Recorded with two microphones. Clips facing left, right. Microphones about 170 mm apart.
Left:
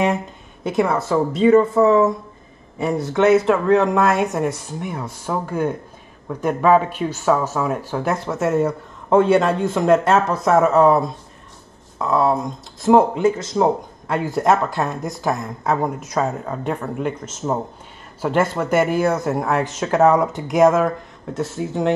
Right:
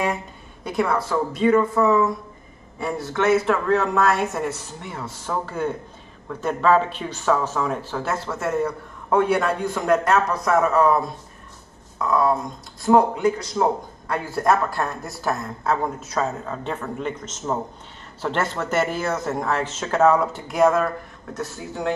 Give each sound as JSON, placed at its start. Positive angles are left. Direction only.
{"t": 0.7, "sound": "speech", "side_deg": 25}
{"t": 2.8, "sound": "speech", "side_deg": 20}